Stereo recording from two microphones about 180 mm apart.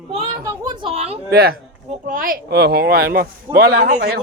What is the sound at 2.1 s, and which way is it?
Speech, 50° right (ahead or behind).